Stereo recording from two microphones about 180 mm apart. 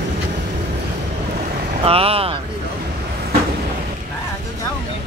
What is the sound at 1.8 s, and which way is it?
Vehicle, 30° right (ahead or behind).